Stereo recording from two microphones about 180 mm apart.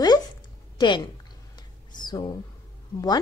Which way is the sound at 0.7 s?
25° left (ahead or behind).